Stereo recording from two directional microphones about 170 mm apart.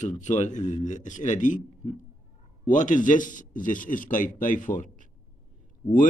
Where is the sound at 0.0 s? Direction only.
45° left (ahead or behind).